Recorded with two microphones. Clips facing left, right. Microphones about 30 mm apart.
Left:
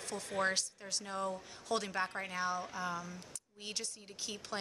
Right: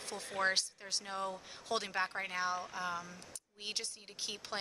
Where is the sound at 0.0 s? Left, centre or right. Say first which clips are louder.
Even; centre.